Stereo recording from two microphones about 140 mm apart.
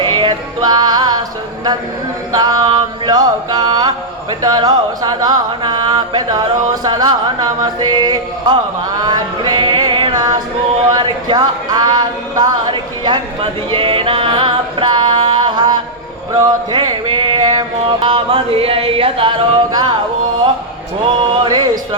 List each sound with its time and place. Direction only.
0.0 s music: 35° right (ahead or behind)
2.3 s chant: 30° right (ahead or behind)
9.0 s music: 30° right (ahead or behind)
10.8 s speech: 30° right (ahead or behind)
16.3 s music: 30° right (ahead or behind)
21.3 s music: 35° right (ahead or behind)